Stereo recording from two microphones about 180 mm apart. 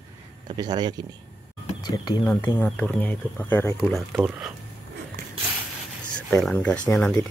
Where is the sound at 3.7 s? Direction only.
Centre (ahead or behind).